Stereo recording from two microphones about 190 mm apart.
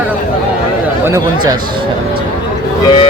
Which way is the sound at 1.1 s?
20° right (ahead or behind).